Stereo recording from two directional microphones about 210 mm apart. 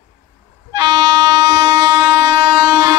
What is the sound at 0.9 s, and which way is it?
Train, 15° right (ahead or behind).